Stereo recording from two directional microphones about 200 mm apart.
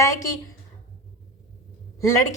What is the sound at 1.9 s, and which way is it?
Speech, 15° left (ahead or behind).